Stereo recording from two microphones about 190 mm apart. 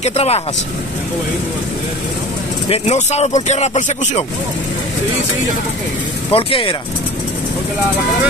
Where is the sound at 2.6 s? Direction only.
30° left (ahead or behind).